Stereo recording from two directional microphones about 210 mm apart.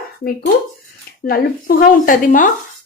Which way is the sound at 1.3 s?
45° left (ahead or behind).